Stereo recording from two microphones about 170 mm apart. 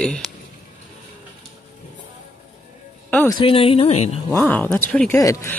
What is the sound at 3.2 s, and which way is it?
Speech, 30° left (ahead or behind).